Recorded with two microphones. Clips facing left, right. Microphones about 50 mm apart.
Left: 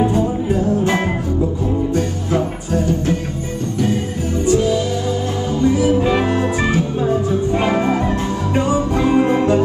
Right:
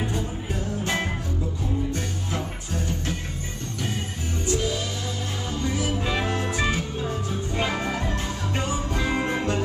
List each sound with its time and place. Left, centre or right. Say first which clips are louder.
0.0 s music: left 13 dB; left
5.6 s music: left 13 dB; left